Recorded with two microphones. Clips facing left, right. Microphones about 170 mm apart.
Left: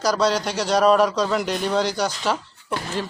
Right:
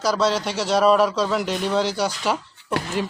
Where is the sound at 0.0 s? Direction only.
5° right (ahead or behind).